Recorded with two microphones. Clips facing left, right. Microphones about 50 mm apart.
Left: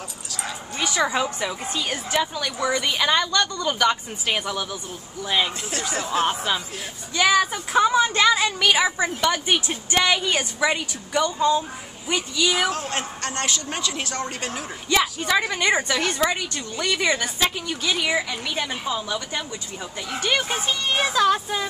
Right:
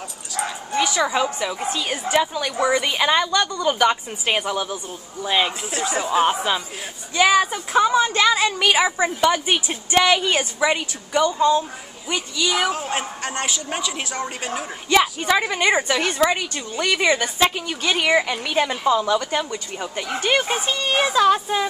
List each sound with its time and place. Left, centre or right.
0.7 s a woman's voice: centre; by 5.5 s right
5.9 s a woman's voice: centre
7.5 s a woman's voice: centre
16.3 s a woman's voice: right
17.1 s a woman's voice: centre
17.8 s a woman's voice: right
20.2 s a woman's voice: right